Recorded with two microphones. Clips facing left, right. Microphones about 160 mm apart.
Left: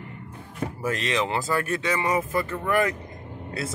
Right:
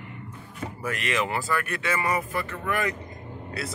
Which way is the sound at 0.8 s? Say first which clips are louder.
Left 2 dB; 25° left (ahead or behind).